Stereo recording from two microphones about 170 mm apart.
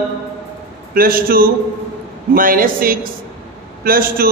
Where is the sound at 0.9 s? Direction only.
60° right (ahead or behind).